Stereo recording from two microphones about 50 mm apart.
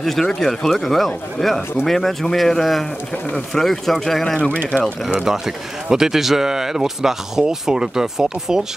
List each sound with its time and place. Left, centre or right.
0.0 s speech: centre
4.6 s speech: centre
5.9 s speech: centre